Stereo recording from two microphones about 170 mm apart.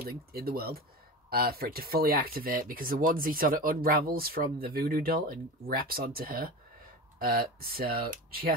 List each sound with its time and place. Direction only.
0.0 s speech: 65° right (ahead or behind)